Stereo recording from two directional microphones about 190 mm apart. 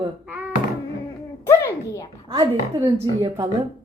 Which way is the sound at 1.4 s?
15° left (ahead or behind).